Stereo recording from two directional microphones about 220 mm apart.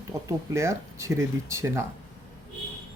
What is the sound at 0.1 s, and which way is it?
Speech, 15° right (ahead or behind).